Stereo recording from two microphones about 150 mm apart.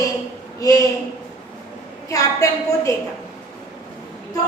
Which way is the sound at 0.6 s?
25° left (ahead or behind).